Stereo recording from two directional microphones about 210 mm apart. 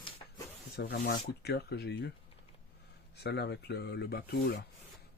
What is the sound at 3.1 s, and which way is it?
Speech, 50° left (ahead or behind).